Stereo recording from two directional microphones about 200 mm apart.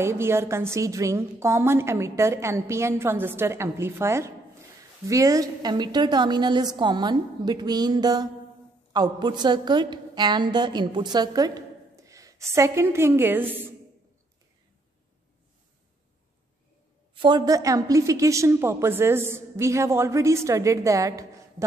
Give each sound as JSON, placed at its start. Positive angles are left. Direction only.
{"t": 0.0, "sound": "a woman's voice", "side_deg": -15}
{"t": 17.1, "sound": "a woman's voice", "side_deg": -25}